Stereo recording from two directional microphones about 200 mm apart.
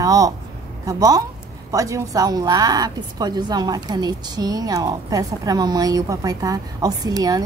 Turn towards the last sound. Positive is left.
turn(degrees=-20)  # may be behind; listen again after turning